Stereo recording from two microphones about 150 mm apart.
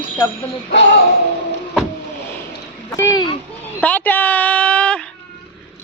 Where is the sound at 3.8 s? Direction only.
10° left (ahead or behind).